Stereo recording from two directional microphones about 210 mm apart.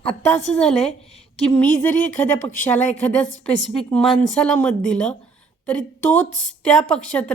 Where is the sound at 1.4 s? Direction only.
10° left (ahead or behind).